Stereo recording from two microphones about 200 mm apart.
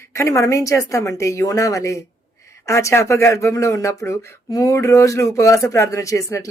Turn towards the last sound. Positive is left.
turn(degrees=15)  # may be behind; listen again after turning